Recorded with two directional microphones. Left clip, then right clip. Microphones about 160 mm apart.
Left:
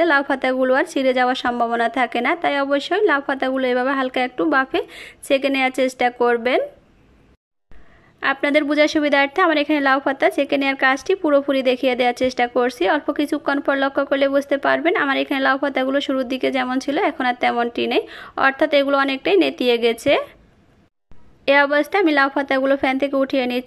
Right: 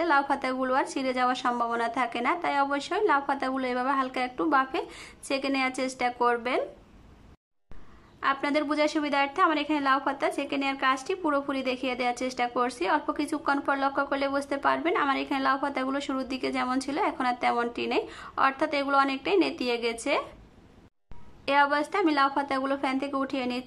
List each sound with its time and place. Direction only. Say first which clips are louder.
0.0 s a woman's voice: left 8 dB; 20° left (ahead or behind)
8.2 s a woman's voice: left 8 dB; 20° left (ahead or behind)
21.5 s a woman's voice: left 8 dB; 20° left (ahead or behind)